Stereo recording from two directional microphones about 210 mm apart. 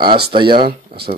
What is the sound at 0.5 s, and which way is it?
Speech, 45° right (ahead or behind).